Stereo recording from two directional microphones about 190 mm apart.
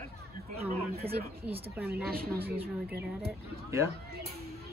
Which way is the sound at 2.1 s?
55° right (ahead or behind).